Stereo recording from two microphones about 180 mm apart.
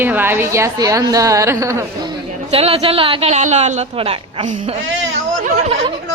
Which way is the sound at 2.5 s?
30° right (ahead or behind).